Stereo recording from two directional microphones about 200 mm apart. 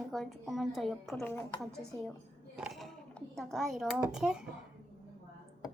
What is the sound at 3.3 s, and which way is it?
Speech, centre (ahead or behind).